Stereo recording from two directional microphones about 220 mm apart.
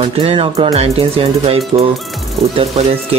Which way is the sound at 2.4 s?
Centre (ahead or behind).